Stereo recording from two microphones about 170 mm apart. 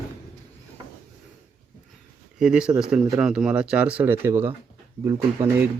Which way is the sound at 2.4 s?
5° right (ahead or behind).